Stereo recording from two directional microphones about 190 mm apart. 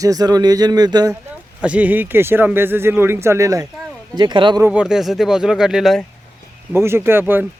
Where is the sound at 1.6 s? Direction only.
5° right (ahead or behind); by 4.6 s 25° right (ahead or behind).